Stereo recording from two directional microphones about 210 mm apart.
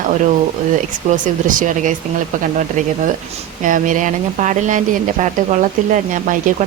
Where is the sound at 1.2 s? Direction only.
40° right (ahead or behind).